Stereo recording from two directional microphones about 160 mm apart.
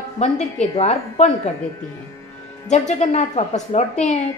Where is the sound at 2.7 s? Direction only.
45° left (ahead or behind).